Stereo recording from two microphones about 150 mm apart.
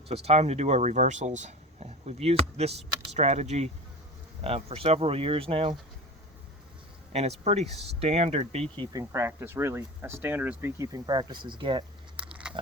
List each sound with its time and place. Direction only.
0.1 s speech: 45° right (ahead or behind)
7.1 s speech: 45° right (ahead or behind)
8.7 s speech: 30° right (ahead or behind)
12.2 s a sound: 5° right (ahead or behind)